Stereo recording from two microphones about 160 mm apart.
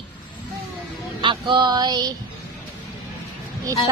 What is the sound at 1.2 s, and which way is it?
Speech, 30° right (ahead or behind).